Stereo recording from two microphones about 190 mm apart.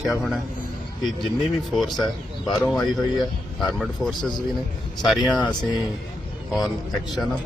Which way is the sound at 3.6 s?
Centre (ahead or behind).